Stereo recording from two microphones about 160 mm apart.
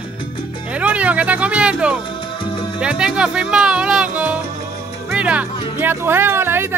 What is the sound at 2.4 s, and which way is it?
Salsa music, 35° left (ahead or behind).